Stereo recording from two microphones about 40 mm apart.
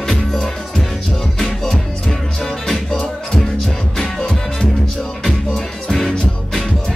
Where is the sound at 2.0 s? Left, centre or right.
Centre.